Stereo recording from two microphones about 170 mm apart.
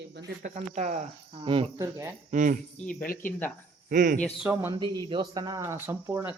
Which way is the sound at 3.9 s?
50° right (ahead or behind).